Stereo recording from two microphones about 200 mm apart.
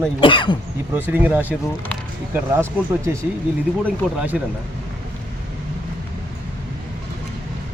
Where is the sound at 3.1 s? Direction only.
10° right (ahead or behind).